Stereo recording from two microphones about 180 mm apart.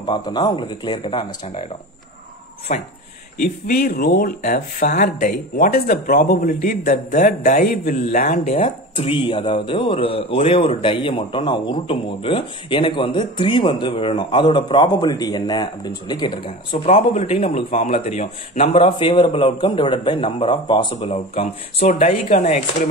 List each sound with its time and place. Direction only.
0.0 s a man's voice: 25° left (ahead or behind)
2.7 s a man's voice: 45° left (ahead or behind)